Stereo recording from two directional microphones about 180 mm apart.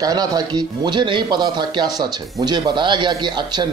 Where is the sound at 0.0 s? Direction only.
20° right (ahead or behind).